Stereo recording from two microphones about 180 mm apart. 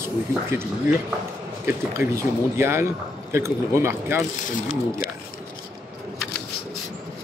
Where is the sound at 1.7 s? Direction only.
15° right (ahead or behind).